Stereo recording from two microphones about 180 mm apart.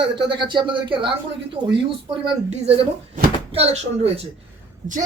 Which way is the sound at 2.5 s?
35° right (ahead or behind).